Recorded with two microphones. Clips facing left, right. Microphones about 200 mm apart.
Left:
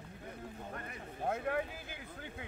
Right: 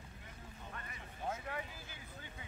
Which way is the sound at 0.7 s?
50° left (ahead or behind).